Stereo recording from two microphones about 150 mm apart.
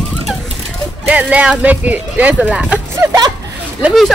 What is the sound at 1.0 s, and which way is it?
Speech, 10° right (ahead or behind).